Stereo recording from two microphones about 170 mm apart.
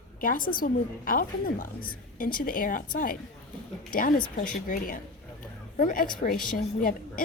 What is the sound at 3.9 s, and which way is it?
A woman's voice, 55° left (ahead or behind).